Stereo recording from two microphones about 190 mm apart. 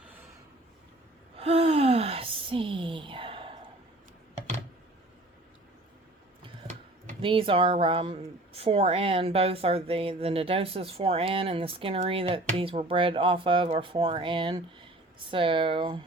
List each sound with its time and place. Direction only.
1.4 s gasp: 30° right (ahead or behind)
6.6 s a sound: 35° right (ahead or behind)
7.2 s speech: 25° right (ahead or behind)